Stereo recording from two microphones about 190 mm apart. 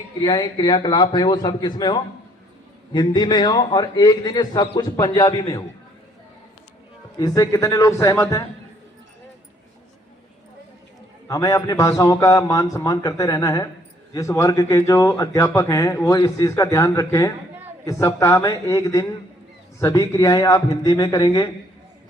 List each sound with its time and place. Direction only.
0.2 s a man's voice: 25° left (ahead or behind)
7.2 s speech: 20° left (ahead or behind)
11.3 s a man's voice: 15° left (ahead or behind)